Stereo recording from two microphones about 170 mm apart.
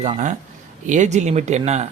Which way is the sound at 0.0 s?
45° right (ahead or behind).